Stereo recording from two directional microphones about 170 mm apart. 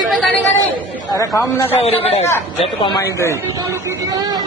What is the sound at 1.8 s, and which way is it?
Speech, 35° left (ahead or behind).